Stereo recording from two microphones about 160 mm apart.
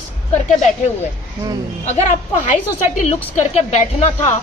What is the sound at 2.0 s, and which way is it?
A woman's voice, 50° left (ahead or behind).